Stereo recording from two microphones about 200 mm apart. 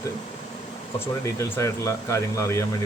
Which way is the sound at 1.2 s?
15° left (ahead or behind).